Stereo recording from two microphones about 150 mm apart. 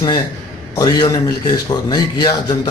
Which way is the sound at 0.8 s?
25° left (ahead or behind).